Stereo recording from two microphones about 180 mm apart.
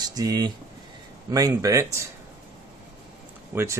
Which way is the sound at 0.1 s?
20° right (ahead or behind).